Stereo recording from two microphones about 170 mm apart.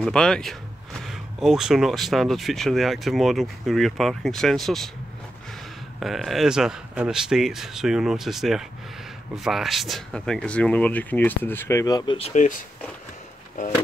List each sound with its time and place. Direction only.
0.0 s speech: 5° left (ahead or behind)
5.9 s speech: centre (ahead or behind); by 12.2 s 20° left (ahead or behind)
12.2 s speech: 40° left (ahead or behind)